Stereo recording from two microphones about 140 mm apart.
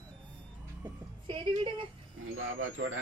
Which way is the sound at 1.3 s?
40° right (ahead or behind).